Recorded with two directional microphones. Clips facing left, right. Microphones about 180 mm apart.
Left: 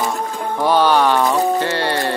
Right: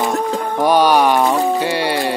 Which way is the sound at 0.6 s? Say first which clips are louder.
Right 2 dB; 15° right (ahead or behind).